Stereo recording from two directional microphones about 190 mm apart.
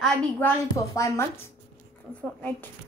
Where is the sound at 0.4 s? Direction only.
10° left (ahead or behind).